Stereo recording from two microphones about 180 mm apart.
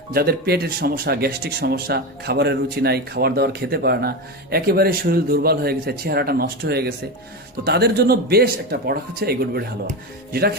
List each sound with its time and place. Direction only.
0.1 s speech: 60° right (ahead or behind)